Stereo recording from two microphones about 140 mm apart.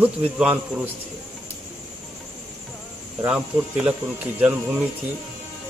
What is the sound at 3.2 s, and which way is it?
Speech, 5° right (ahead or behind).